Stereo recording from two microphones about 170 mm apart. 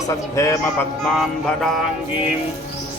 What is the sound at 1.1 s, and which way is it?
Music, centre (ahead or behind).